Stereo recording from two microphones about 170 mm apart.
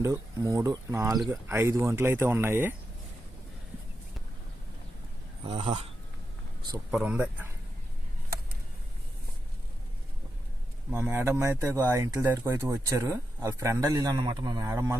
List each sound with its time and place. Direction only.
0.0 s speech: 20° right (ahead or behind)
5.5 s speech: 30° right (ahead or behind)
6.9 s speech: 5° right (ahead or behind)
10.9 s speech: 15° right (ahead or behind)